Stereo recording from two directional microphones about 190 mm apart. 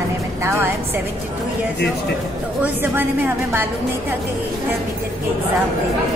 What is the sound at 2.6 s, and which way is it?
A woman's voice, 10° right (ahead or behind).